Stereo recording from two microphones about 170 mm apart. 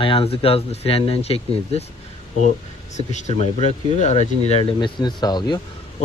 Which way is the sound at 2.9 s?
45° left (ahead or behind).